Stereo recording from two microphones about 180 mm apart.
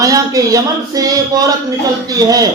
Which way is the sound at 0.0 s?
20° right (ahead or behind).